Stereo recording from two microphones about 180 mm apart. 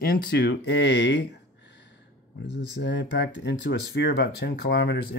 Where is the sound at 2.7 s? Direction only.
75° left (ahead or behind).